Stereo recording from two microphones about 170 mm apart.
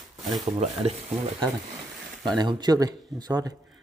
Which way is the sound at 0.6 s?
35° right (ahead or behind).